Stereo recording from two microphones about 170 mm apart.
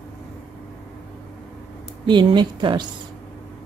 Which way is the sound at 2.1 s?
30° right (ahead or behind).